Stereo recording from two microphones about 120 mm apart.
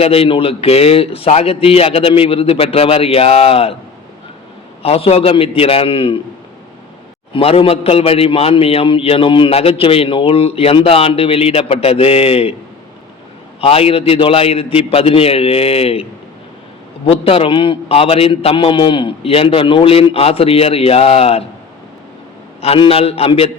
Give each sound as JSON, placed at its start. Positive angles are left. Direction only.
{"t": 0.0, "sound": "a man's voice", "side_deg": 55}
{"t": 4.8, "sound": "a man's voice", "side_deg": 55}
{"t": 7.3, "sound": "a man's voice", "side_deg": 50}
{"t": 13.6, "sound": "a man's voice", "side_deg": 55}
{"t": 17.1, "sound": "a man's voice", "side_deg": 50}
{"t": 22.6, "sound": "a man's voice", "side_deg": 55}